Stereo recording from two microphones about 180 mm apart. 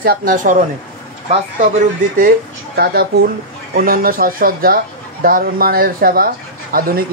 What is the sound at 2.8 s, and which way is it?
Speech, 65° right (ahead or behind).